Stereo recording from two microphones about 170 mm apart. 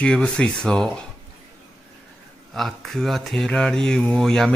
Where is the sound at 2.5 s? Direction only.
Centre (ahead or behind).